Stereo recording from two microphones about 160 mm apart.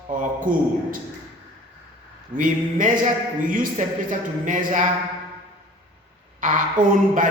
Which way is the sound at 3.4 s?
55° right (ahead or behind).